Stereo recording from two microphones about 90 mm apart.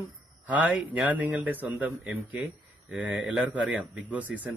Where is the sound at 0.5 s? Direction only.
15° right (ahead or behind).